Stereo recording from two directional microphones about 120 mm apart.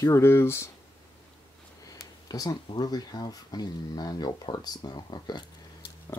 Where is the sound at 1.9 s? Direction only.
30° left (ahead or behind).